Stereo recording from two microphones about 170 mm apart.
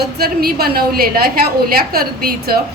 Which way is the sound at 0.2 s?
65° right (ahead or behind).